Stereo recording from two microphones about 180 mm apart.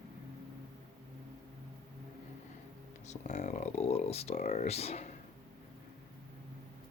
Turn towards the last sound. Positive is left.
turn(degrees=35)  # may be behind; listen again after turning